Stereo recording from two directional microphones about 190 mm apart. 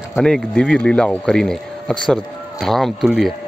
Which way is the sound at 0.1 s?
Centre (ahead or behind).